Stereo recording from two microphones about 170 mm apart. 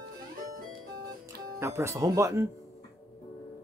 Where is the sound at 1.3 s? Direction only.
15° right (ahead or behind).